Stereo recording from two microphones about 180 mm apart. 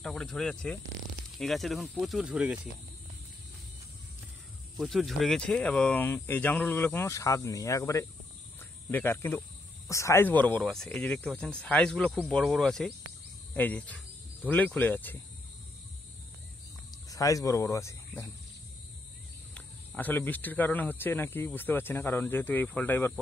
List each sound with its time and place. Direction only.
0.0 s speech: 5° left (ahead or behind)
4.7 s speech: centre (ahead or behind); by 8.1 s 15° left (ahead or behind)
8.5 s cricket: 10° left (ahead or behind)
9.8 s speech: 15° left (ahead or behind)
17.1 s speech: 20° left (ahead or behind)
19.5 s speech: 10° left (ahead or behind)